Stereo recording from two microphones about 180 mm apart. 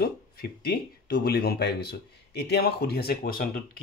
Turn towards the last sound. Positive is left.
turn(degrees=55)  # may be behind; listen again after turning